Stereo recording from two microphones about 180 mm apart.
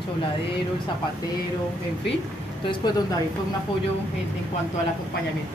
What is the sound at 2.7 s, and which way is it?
Speech, 25° left (ahead or behind).